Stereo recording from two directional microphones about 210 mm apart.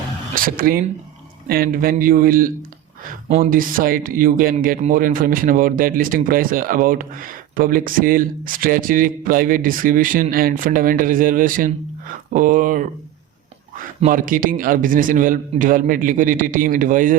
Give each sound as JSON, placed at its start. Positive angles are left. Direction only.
{"t": 0.3, "sound": "speech", "side_deg": -45}
{"t": 3.2, "sound": "speech", "side_deg": -30}
{"t": 3.5, "sound": "speech", "side_deg": -40}
{"t": 14.0, "sound": "speech", "side_deg": -40}